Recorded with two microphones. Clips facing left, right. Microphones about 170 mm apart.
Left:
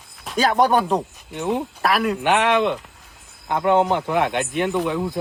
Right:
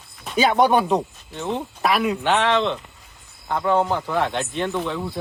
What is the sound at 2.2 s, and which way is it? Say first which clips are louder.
Speech: left 2 dB; 15° left (ahead or behind).